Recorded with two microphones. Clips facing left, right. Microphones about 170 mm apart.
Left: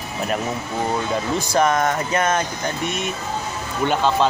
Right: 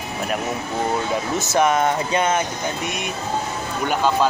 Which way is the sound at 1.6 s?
15° right (ahead or behind).